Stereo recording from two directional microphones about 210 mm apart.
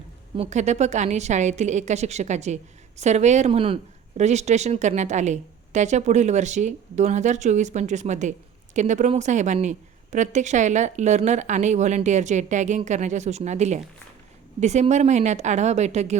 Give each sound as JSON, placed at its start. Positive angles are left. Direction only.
{"t": 0.3, "sound": "a woman's voice", "side_deg": -35}